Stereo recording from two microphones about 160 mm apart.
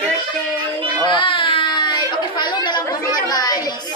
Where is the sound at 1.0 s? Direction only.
30° left (ahead or behind).